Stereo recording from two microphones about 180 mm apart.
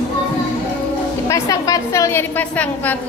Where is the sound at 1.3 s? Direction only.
20° left (ahead or behind).